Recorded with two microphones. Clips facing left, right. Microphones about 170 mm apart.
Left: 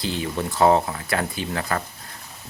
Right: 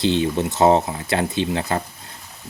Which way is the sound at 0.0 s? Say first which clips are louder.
Right 7 dB; 25° right (ahead or behind).